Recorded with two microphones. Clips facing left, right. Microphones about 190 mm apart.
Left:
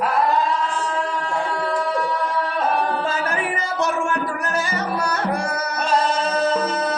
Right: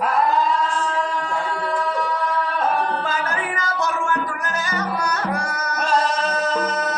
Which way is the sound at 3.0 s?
25° left (ahead or behind).